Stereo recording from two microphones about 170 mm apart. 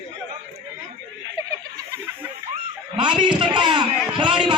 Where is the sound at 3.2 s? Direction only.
25° right (ahead or behind).